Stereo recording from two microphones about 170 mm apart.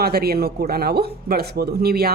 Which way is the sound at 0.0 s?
65° right (ahead or behind).